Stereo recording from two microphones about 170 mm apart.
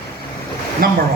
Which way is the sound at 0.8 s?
60° right (ahead or behind).